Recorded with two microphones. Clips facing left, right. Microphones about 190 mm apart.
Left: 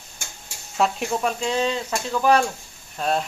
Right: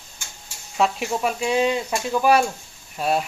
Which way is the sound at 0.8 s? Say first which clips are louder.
Even; 5° right (ahead or behind).